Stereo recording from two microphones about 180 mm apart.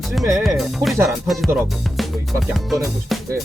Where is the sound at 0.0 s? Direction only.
Centre (ahead or behind).